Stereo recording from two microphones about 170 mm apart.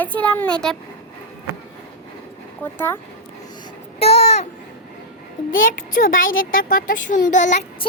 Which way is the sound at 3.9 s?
35° left (ahead or behind).